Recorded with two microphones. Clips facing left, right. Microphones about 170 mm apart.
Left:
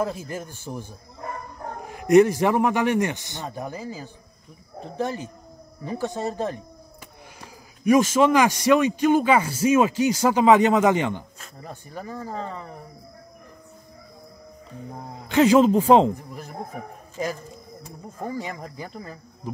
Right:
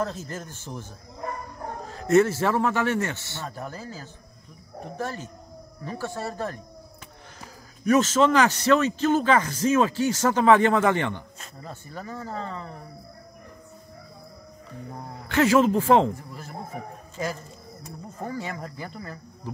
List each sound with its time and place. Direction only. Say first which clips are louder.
0.0 s a man's voice: left 3 dB; 10° left (ahead or behind)
1.9 s a man's voice: left 4 dB; 15° left (ahead or behind)
7.8 s a man's voice: left 2 dB; 10° left (ahead or behind)
15.0 s a man's voice: left 4 dB; 20° left (ahead or behind)
18.2 s a man's voice: left 2 dB; 15° left (ahead or behind)